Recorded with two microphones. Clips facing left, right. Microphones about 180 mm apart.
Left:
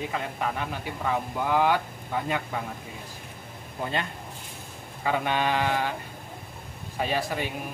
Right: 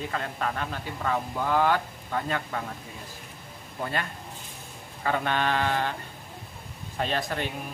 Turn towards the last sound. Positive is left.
turn(degrees=10)  # may be behind; listen again after turning